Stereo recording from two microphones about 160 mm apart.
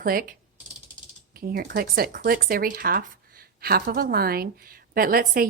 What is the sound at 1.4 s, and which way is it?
A woman's voice, 70° right (ahead or behind).